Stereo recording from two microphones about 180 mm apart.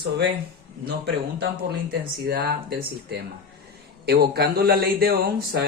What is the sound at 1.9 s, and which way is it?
Speech, 60° right (ahead or behind).